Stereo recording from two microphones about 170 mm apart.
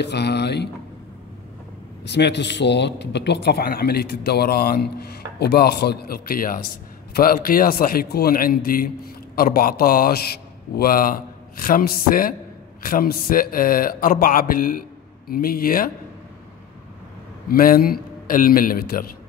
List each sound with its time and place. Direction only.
0.0 s speech: 75° left (ahead or behind)
2.0 s a man's voice: 90° left; by 15.9 s 60° left (ahead or behind)
17.5 s a man's voice: 60° left (ahead or behind)